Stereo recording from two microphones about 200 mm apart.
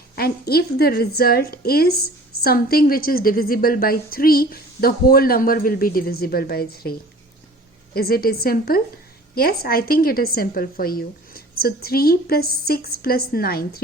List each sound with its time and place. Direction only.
0.2 s a woman's voice: 50° left (ahead or behind)
7.9 s a woman's voice: 50° left (ahead or behind)